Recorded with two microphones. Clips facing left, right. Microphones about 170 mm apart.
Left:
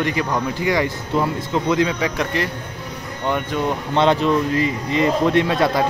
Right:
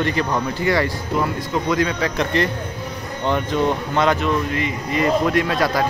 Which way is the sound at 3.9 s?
25° left (ahead or behind).